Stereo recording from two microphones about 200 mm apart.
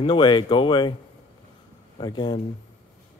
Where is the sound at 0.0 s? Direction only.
25° left (ahead or behind).